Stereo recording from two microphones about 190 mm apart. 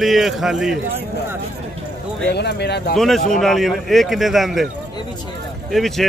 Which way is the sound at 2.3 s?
60° left (ahead or behind).